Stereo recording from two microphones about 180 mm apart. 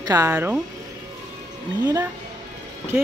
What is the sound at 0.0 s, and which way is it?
Speech, 20° right (ahead or behind).